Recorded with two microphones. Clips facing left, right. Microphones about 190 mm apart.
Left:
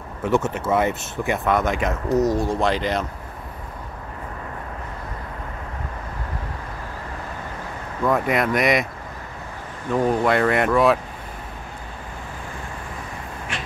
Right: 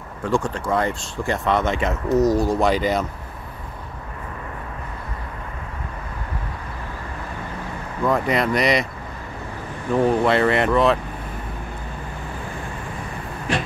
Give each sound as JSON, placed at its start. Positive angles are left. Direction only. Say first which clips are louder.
{"t": 0.2, "sound": "speech", "louder": "left 1 dB", "side_deg": 20}
{"t": 1.5, "sound": "speech", "louder": "right 1 dB", "side_deg": 0}
{"t": 8.0, "sound": "speech", "louder": "even", "side_deg": 0}
{"t": 10.2, "sound": "speech", "louder": "right 1 dB", "side_deg": 0}
{"t": 13.5, "sound": "vehicle", "louder": "right 10 dB", "side_deg": -40}